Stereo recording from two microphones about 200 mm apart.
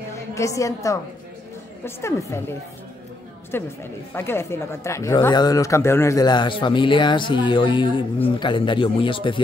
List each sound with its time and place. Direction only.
0.3 s a woman's voice: 15° left (ahead or behind)
3.5 s a woman's voice: 10° left (ahead or behind)